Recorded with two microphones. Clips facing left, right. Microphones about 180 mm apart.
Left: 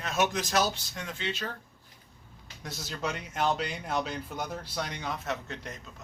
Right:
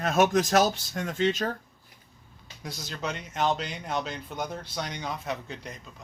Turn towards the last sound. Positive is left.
turn(degrees=0)  # may be behind; listen again after turning